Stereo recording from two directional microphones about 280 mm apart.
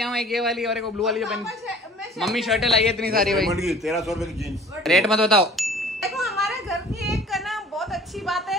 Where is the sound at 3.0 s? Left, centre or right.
Right.